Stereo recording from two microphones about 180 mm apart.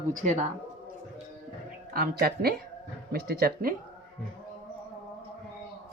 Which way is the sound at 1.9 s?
60° right (ahead or behind).